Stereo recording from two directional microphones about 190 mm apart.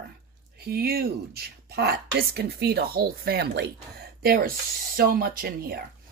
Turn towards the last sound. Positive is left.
turn(degrees=-55)  # may be behind; listen again after turning